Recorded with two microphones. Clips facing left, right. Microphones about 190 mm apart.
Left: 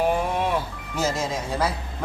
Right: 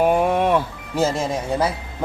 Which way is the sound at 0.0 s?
60° right (ahead or behind).